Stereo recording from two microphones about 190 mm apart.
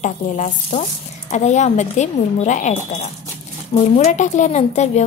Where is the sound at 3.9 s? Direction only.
40° left (ahead or behind).